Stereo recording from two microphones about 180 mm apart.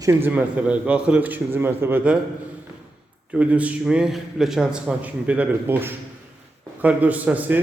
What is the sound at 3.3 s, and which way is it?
A man's voice, 5° right (ahead or behind).